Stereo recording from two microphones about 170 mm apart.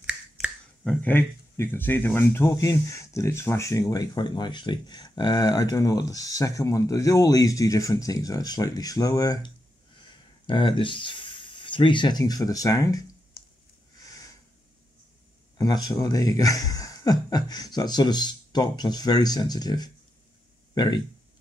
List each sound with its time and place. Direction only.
0.0 s finger snapping: 5° right (ahead or behind)
1.0 s speech: 10° left (ahead or behind)
15.5 s speech: 20° left (ahead or behind)